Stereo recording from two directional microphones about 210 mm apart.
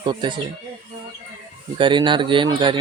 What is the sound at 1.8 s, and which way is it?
Speech, 25° right (ahead or behind).